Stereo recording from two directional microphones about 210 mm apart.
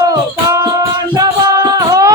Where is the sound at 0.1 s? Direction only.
15° right (ahead or behind).